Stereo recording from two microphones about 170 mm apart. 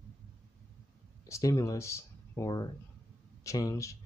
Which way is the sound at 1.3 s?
20° left (ahead or behind).